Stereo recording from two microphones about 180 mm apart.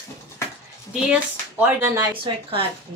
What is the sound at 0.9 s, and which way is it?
Speech, 5° right (ahead or behind).